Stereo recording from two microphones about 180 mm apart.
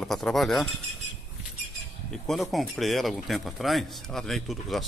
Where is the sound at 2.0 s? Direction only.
Centre (ahead or behind).